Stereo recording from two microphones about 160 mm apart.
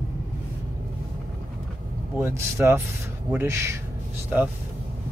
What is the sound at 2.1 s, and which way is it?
Speech, 15° right (ahead or behind).